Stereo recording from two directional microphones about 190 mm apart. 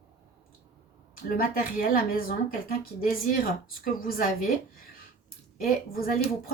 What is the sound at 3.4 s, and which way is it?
Speech, 50° left (ahead or behind).